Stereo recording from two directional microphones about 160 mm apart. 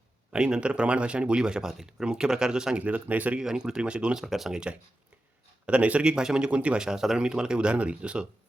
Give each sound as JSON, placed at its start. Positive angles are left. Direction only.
{"t": 0.3, "sound": "speech", "side_deg": -5}